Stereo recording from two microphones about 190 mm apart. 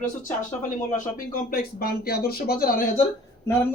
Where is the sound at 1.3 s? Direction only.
50° left (ahead or behind).